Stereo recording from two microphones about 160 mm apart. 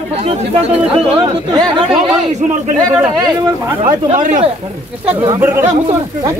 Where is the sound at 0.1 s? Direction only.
40° right (ahead or behind).